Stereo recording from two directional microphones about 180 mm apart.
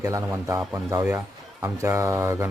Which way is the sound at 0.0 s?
15° right (ahead or behind).